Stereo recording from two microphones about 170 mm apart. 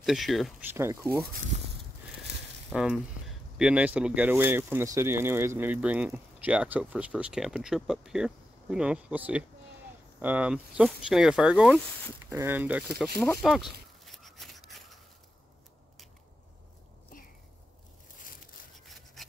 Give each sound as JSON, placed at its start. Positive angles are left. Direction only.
{"t": 0.0, "sound": "speech", "side_deg": 0}
{"t": 0.7, "sound": "speech", "side_deg": -15}
{"t": 2.7, "sound": "speech", "side_deg": -5}
{"t": 13.4, "sound": "a sound", "side_deg": 0}
{"t": 17.1, "sound": "a sound", "side_deg": 55}
{"t": 18.9, "sound": "rub", "side_deg": 0}